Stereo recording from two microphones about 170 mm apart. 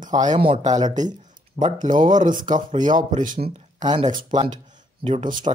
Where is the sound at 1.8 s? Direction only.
50° right (ahead or behind).